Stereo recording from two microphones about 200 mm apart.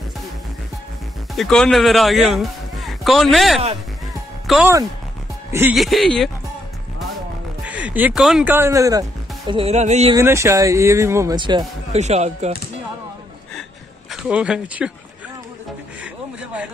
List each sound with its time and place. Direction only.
1.3 s a man's voice: centre (ahead or behind)
5.8 s speech: centre (ahead or behind)
7.6 s speech: 5° right (ahead or behind)
9.5 s music: 30° right (ahead or behind)
10.1 s speech: 15° right (ahead or behind); by 12.5 s 35° right (ahead or behind)
14.1 s speech: 5° right (ahead or behind)